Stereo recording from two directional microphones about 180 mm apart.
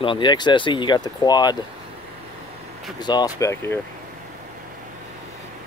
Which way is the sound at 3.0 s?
20° left (ahead or behind).